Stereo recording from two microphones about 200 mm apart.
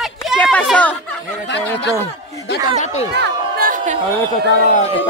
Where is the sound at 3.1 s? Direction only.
50° right (ahead or behind).